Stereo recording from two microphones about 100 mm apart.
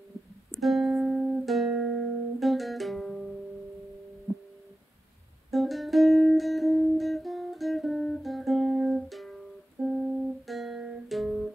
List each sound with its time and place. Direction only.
0.5 s music: centre (ahead or behind)
5.5 s music: centre (ahead or behind)